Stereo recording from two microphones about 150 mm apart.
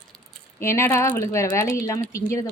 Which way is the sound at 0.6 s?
15° left (ahead or behind).